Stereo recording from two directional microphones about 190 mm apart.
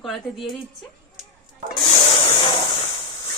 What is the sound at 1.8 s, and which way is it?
Printer, 30° left (ahead or behind).